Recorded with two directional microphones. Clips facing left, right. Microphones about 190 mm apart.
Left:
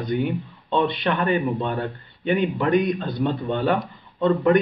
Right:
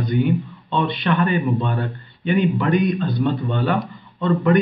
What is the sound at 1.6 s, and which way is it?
Speech, 30° left (ahead or behind).